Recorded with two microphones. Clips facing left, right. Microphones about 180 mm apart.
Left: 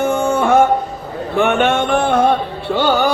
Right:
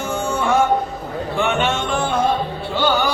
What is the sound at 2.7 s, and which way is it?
Music, 50° left (ahead or behind).